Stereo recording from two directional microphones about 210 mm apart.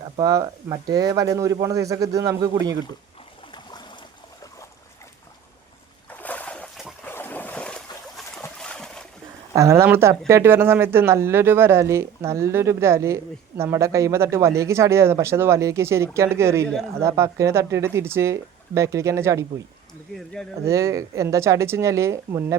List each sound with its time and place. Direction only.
0.2 s speech: 15° right (ahead or behind)
3.5 s stream: 20° left (ahead or behind)
6.1 s a sound: 5° left (ahead or behind)
7.1 s boat: 10° left (ahead or behind)
9.6 s speech: 15° right (ahead or behind)
20.1 s speech: 5° left (ahead or behind)
20.7 s speech: 15° right (ahead or behind)